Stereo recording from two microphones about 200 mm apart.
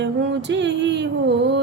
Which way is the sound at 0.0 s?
60° right (ahead or behind).